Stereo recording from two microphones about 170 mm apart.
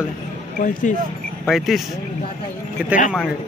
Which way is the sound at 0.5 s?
50° left (ahead or behind).